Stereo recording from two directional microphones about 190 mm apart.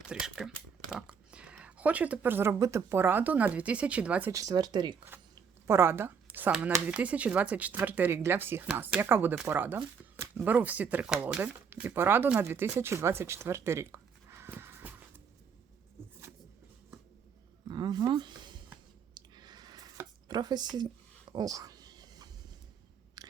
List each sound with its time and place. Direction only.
0.1 s speech: centre (ahead or behind)
17.7 s speech: 20° right (ahead or behind)
19.1 s a sound: 20° right (ahead or behind)
23.2 s chewing: 20° right (ahead or behind)